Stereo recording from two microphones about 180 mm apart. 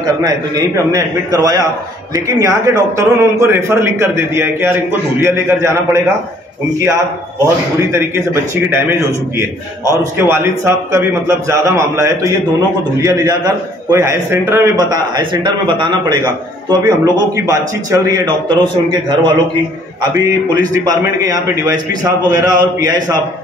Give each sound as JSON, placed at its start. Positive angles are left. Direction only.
{"t": 0.2, "sound": "a man's voice", "side_deg": -20}
{"t": 8.6, "sound": "a man's voice", "side_deg": -10}
{"t": 10.1, "sound": "a man's voice", "side_deg": -15}
{"t": 20.8, "sound": "a man's voice", "side_deg": -20}